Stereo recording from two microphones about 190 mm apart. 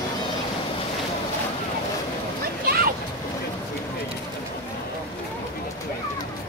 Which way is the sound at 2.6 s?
50° right (ahead or behind).